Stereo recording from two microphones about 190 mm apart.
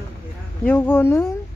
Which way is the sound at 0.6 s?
10° left (ahead or behind).